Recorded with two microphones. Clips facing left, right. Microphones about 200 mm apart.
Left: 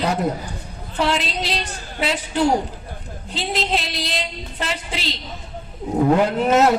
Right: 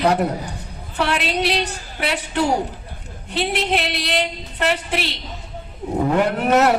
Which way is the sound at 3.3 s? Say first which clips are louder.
Right 2 dB; 65° right (ahead or behind).